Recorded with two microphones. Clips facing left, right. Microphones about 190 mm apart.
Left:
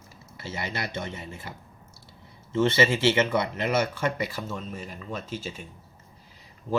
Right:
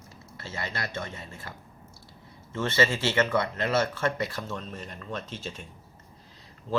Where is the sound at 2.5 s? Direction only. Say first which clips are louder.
Left 4 dB; 20° left (ahead or behind).